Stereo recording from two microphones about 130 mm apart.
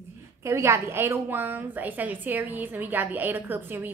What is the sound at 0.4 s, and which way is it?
A woman's voice, 20° right (ahead or behind).